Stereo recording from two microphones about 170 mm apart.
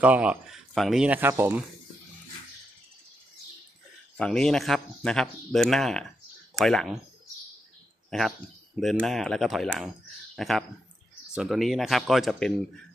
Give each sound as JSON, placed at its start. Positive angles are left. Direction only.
{"t": 0.0, "sound": "speech", "side_deg": -10}
{"t": 4.2, "sound": "speech", "side_deg": 5}
{"t": 9.0, "sound": "speech", "side_deg": 0}